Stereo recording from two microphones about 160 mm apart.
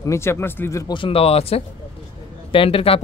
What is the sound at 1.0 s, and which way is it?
A man's voice, 35° left (ahead or behind).